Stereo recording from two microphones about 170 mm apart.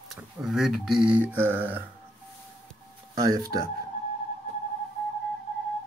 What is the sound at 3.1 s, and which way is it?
Speech, 20° right (ahead or behind).